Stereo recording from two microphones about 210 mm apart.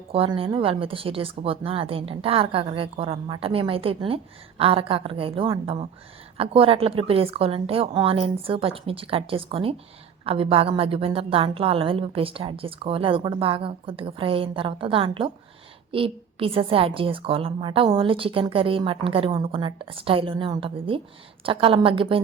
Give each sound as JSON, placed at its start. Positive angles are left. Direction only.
{"t": 0.1, "sound": "a woman's voice", "side_deg": -25}